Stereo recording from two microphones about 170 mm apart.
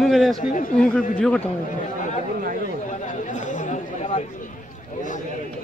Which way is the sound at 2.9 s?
50° left (ahead or behind).